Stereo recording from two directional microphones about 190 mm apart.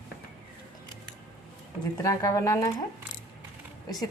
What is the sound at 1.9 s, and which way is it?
Speech, 15° left (ahead or behind).